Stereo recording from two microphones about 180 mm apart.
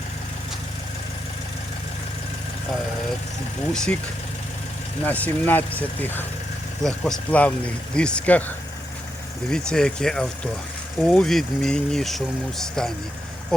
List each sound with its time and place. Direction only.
3.7 s speech: 5° left (ahead or behind)
5.0 s speech: 10° left (ahead or behind)